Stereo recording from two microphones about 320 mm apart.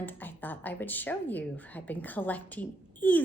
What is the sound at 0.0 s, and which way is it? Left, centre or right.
A woman's voice, centre.